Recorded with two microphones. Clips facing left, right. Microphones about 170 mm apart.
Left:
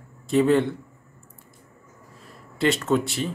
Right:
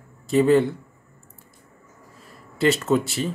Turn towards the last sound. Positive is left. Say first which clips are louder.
# right 1 dB
turn(degrees=0)  # may be behind; listen again after turning